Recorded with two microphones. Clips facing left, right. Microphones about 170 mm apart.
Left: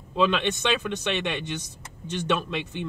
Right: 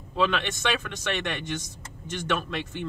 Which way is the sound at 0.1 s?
20° left (ahead or behind).